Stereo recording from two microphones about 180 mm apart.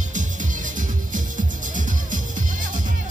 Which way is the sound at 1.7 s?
45° right (ahead or behind).